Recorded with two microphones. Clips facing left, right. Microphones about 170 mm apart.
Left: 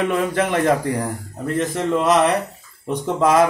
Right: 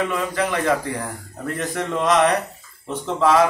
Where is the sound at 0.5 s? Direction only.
25° left (ahead or behind).